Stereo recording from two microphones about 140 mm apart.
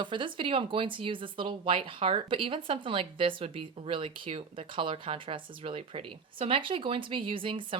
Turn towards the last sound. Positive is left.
turn(degrees=-40)  # may be behind; listen again after turning